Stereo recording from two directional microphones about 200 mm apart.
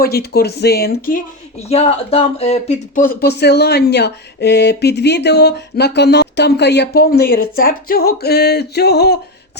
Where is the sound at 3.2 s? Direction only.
55° left (ahead or behind).